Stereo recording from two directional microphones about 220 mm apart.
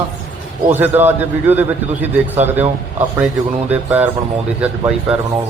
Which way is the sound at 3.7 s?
5° right (ahead or behind).